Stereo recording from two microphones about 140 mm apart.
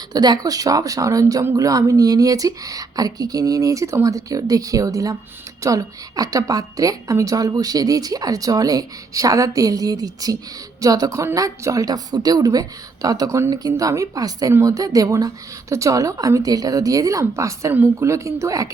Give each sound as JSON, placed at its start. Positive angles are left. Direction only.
{"t": 0.1, "sound": "a woman's voice", "side_deg": -30}